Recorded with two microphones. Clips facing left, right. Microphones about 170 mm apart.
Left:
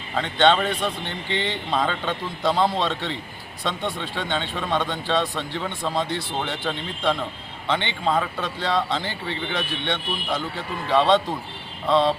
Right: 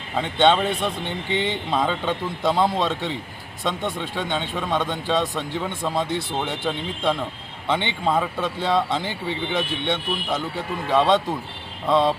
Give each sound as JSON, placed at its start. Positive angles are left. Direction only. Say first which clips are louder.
{"t": 0.2, "sound": "speech", "louder": "right 1 dB", "side_deg": -10}
{"t": 1.7, "sound": "a man's voice", "louder": "right 1 dB", "side_deg": -5}
{"t": 4.2, "sound": "a man's voice", "louder": "right 1 dB", "side_deg": 0}
{"t": 10.9, "sound": "a man's voice", "louder": "even", "side_deg": 0}